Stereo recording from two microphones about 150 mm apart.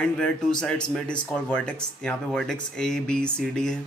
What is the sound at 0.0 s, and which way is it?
Speech, 5° left (ahead or behind).